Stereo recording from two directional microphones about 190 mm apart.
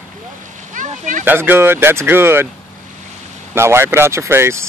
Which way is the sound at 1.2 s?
10° right (ahead or behind).